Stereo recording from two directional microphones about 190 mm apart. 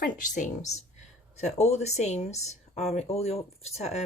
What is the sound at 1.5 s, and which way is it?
Speech, 35° left (ahead or behind).